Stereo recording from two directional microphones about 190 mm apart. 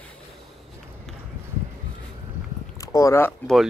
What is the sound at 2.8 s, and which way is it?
Speech, 15° left (ahead or behind).